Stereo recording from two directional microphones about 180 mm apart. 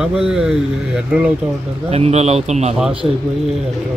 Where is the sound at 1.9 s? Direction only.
35° right (ahead or behind).